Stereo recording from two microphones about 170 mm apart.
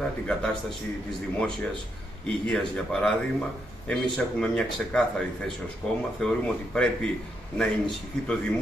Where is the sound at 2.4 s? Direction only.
5° left (ahead or behind).